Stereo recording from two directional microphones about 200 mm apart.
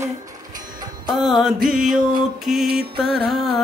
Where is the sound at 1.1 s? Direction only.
Centre (ahead or behind).